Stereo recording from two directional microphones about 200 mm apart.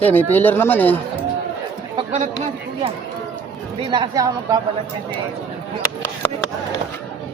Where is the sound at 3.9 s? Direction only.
20° right (ahead or behind).